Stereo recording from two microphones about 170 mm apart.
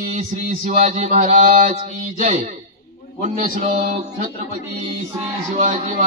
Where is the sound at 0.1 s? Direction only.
40° right (ahead or behind).